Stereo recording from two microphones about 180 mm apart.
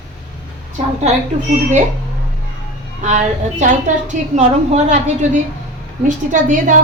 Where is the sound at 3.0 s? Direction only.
40° right (ahead or behind).